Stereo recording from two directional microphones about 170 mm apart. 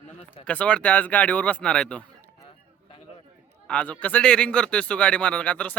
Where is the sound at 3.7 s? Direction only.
5° left (ahead or behind).